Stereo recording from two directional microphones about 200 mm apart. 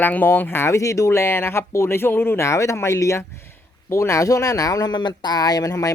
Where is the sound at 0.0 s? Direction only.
10° left (ahead or behind).